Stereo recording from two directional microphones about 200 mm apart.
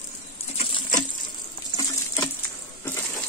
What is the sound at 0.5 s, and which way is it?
Patter, 30° left (ahead or behind).